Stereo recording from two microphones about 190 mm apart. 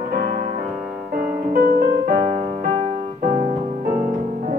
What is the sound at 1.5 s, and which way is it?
Music, 50° right (ahead or behind).